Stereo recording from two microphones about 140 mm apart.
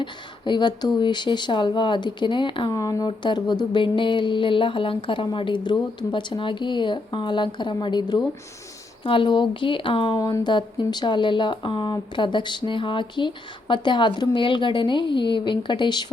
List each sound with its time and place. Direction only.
0.0 s speech: 35° left (ahead or behind)